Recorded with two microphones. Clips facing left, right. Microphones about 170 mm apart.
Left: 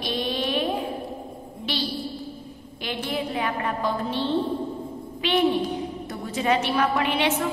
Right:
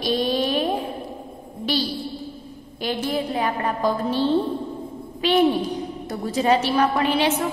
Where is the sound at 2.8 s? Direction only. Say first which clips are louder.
Right 4 dB; 40° right (ahead or behind).